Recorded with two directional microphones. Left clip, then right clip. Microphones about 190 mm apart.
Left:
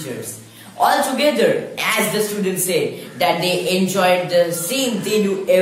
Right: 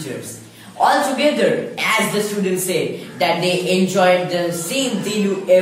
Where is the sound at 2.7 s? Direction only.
20° left (ahead or behind).